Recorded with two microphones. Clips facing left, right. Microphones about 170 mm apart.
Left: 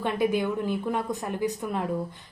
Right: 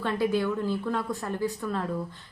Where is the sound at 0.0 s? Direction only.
20° left (ahead or behind).